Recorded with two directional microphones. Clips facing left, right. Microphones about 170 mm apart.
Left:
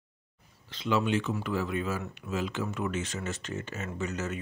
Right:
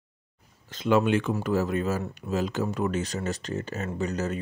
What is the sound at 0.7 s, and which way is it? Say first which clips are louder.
Speech: right 6 dB; 50° right (ahead or behind).